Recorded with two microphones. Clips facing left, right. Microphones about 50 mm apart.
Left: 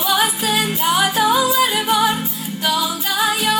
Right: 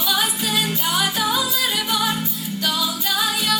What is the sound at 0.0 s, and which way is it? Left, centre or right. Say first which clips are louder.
Music: left 4 dB; left.